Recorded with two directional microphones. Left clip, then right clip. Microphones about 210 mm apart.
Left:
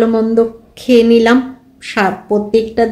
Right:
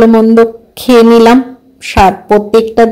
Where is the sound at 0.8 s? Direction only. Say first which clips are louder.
Right 5 dB; 35° right (ahead or behind).